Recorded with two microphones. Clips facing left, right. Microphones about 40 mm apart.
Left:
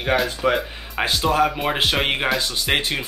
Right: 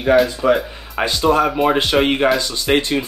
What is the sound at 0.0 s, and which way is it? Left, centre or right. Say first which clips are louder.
Speech: right 6 dB; centre.